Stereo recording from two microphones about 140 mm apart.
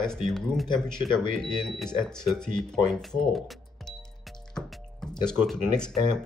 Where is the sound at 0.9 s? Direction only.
35° left (ahead or behind).